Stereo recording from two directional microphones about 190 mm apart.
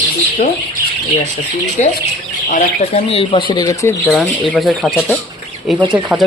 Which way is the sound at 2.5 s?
35° left (ahead or behind).